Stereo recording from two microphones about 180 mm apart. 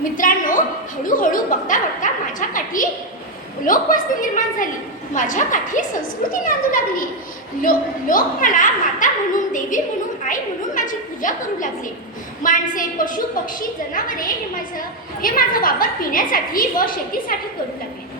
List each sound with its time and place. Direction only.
0.2 s a woman's voice: 50° left (ahead or behind)